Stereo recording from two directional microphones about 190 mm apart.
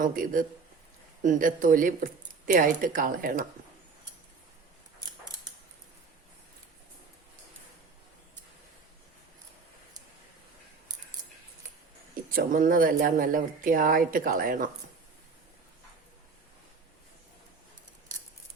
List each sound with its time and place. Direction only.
0.0 s speech: 45° right (ahead or behind)
12.3 s speech: 45° right (ahead or behind)